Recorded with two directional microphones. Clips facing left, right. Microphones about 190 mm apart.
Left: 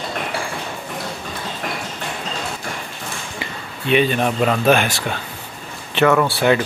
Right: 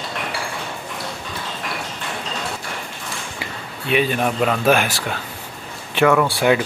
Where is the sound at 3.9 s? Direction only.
5° right (ahead or behind).